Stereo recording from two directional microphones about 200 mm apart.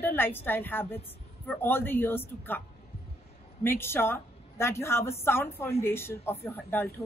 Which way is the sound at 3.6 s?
10° left (ahead or behind).